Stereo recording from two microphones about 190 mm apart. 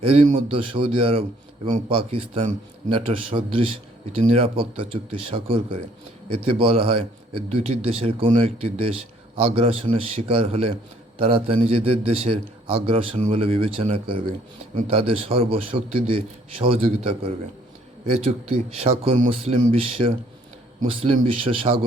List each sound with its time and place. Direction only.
0.0 s a man's voice: 35° right (ahead or behind)